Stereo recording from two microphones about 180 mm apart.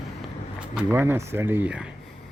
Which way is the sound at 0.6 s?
10° right (ahead or behind).